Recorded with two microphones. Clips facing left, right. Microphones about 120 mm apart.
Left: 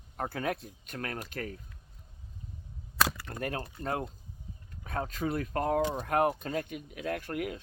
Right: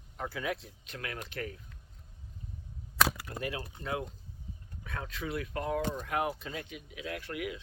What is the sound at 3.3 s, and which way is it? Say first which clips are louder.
Speech: left 2 dB; 50° left (ahead or behind).